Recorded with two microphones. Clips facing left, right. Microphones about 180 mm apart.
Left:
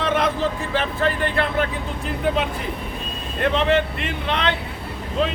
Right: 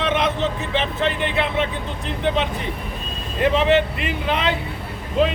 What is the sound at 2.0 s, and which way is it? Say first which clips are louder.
Speech: even; 5° left (ahead or behind).